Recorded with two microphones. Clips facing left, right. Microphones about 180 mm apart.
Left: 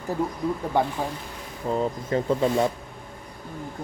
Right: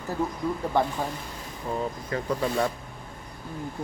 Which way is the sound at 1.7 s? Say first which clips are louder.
Left 5 dB; 25° left (ahead or behind).